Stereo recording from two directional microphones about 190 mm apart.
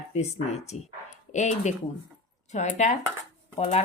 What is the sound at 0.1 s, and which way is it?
Speech, 35° left (ahead or behind).